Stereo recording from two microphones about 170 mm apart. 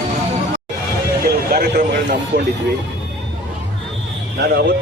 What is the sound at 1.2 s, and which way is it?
Vehicle, 65° right (ahead or behind).